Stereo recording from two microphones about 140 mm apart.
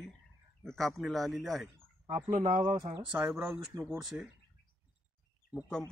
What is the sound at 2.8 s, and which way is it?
Speech, 35° right (ahead or behind).